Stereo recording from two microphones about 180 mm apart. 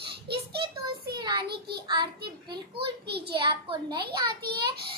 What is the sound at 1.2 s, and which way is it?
Speech, 25° right (ahead or behind).